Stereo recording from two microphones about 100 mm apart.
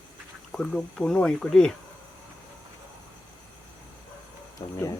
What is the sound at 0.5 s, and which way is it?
Speech, 10° left (ahead or behind).